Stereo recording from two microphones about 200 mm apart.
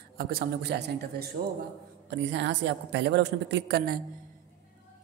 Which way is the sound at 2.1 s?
60° right (ahead or behind).